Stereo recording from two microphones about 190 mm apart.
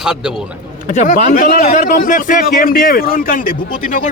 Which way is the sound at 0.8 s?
45° left (ahead or behind).